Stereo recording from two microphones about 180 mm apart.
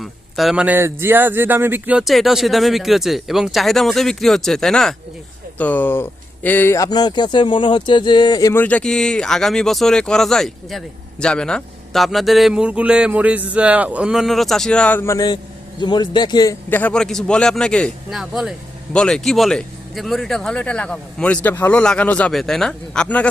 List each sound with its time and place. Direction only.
0.0 s speech: centre (ahead or behind); by 8.6 s 20° left (ahead or behind)
8.6 s speech: 5° left (ahead or behind); by 16.6 s 20° left (ahead or behind)
16.6 s speech: 10° left (ahead or behind)